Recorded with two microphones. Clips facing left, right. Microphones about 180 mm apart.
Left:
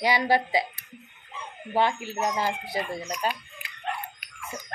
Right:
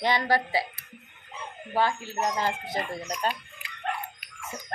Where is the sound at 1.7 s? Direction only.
20° left (ahead or behind).